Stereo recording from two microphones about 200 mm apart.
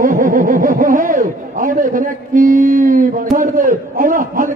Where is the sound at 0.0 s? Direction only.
45° right (ahead or behind).